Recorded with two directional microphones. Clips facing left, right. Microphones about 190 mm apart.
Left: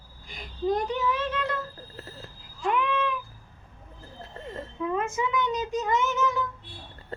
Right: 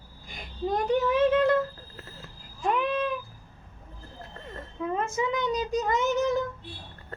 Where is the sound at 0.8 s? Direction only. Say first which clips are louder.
Right 6 dB; 50° right (ahead or behind).